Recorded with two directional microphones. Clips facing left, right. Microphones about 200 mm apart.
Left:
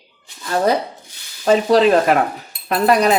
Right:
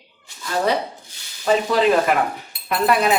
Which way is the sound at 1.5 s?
40° left (ahead or behind).